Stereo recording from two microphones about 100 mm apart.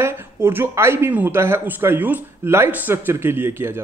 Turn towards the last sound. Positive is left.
turn(degrees=-25)  # may be behind; listen again after turning